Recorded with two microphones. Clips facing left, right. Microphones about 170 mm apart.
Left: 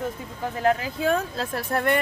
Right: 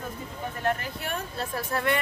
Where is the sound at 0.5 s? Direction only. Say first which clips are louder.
Left 6 dB; 90° left.